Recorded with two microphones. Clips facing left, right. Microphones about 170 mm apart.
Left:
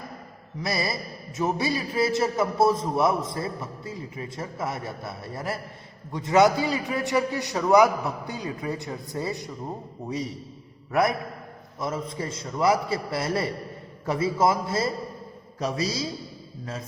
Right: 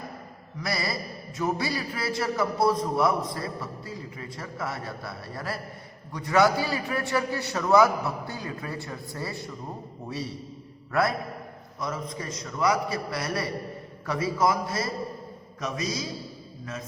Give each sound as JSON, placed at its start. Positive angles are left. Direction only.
{"t": 0.6, "sound": "a man's voice", "side_deg": 20}
{"t": 11.8, "sound": "a man's voice", "side_deg": 25}